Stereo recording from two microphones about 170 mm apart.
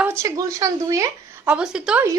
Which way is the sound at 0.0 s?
15° right (ahead or behind).